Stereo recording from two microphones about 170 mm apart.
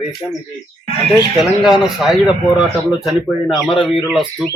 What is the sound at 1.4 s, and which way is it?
A man's voice, 5° right (ahead or behind).